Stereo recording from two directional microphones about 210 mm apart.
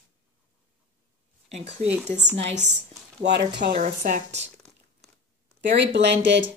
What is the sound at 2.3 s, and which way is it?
Speech, 35° right (ahead or behind).